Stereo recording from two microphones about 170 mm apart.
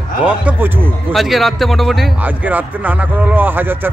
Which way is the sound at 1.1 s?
Centre (ahead or behind).